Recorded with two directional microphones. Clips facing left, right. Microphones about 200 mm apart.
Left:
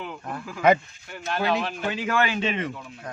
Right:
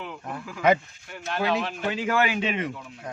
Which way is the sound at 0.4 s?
45° left (ahead or behind).